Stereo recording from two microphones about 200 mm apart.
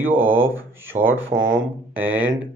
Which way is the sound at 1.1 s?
75° right (ahead or behind).